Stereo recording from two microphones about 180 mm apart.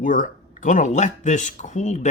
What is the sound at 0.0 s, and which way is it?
Speech, 50° left (ahead or behind).